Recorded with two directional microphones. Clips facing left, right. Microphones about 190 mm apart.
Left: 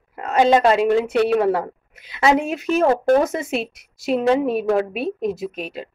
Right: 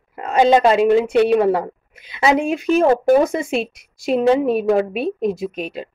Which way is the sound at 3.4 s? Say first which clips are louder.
Right 3 dB; 5° left (ahead or behind).